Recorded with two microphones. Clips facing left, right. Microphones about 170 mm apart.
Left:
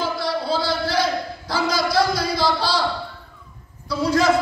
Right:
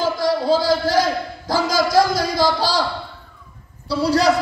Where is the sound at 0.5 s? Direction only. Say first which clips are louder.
Right 6 dB; 40° right (ahead or behind).